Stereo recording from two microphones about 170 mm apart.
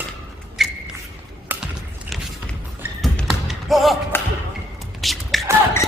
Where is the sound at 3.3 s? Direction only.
Centre (ahead or behind).